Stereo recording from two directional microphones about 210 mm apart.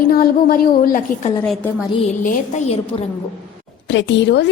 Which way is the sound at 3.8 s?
60° left (ahead or behind).